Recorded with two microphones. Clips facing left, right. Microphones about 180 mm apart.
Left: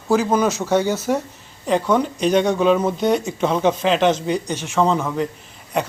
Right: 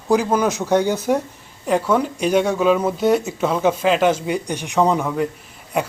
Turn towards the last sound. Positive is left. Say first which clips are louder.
# even
turn(degrees=-10)  # may be behind; listen again after turning